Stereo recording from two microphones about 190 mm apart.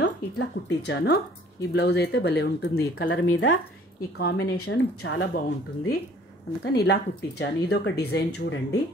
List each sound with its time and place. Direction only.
0.0 s speech: 65° left (ahead or behind)
6.6 s speech: 55° left (ahead or behind)